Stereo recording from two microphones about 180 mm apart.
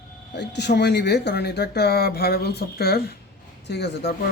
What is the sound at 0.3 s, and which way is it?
Speech, 70° left (ahead or behind).